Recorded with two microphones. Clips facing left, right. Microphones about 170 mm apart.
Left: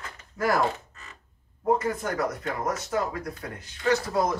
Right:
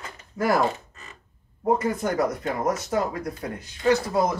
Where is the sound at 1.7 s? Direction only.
15° right (ahead or behind).